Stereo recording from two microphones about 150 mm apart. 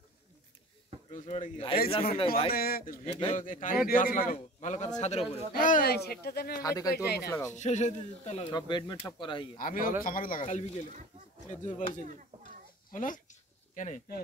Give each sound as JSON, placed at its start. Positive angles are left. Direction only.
{"t": 1.1, "sound": "speech", "side_deg": 50}
{"t": 2.5, "sound": "speech", "side_deg": 90}
{"t": 3.0, "sound": "speech", "side_deg": 40}
{"t": 3.3, "sound": "a man's voice", "side_deg": 60}
{"t": 5.5, "sound": "speech", "side_deg": 65}
{"t": 6.6, "sound": "speech", "side_deg": 25}
{"t": 7.5, "sound": "speech", "side_deg": 50}
{"t": 8.5, "sound": "speech", "side_deg": 30}
{"t": 9.6, "sound": "speech", "side_deg": 65}
{"t": 10.4, "sound": "speech", "side_deg": 50}
{"t": 12.9, "sound": "a sound", "side_deg": 60}